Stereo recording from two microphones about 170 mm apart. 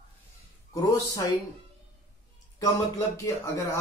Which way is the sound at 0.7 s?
20° left (ahead or behind).